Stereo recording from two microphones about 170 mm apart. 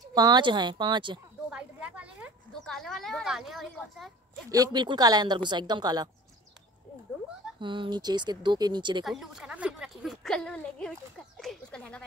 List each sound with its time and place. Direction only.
0.1 s a woman's voice: 25° right (ahead or behind)
1.5 s a sound: 5° right (ahead or behind)
2.6 s speech: centre (ahead or behind)
4.5 s a woman's voice: 25° right (ahead or behind)
7.6 s a woman's voice: 30° right (ahead or behind)
9.0 s speech: 5° right (ahead or behind)